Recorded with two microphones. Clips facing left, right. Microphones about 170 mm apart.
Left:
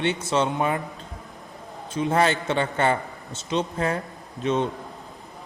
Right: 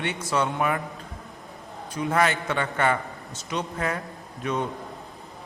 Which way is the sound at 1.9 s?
25° left (ahead or behind).